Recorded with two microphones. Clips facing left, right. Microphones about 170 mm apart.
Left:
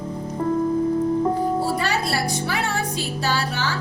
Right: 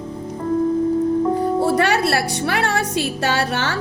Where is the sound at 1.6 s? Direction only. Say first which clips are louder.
Right 6 dB; 70° right (ahead or behind).